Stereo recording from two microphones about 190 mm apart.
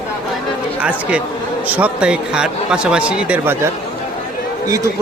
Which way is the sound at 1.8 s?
5° right (ahead or behind).